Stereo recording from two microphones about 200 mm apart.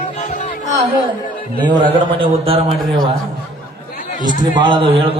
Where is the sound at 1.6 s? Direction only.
25° right (ahead or behind).